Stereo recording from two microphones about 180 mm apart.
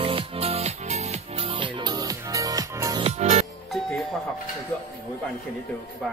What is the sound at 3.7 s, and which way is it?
Doorbell, centre (ahead or behind).